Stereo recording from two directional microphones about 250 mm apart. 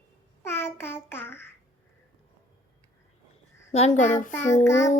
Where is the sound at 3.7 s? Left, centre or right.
Left.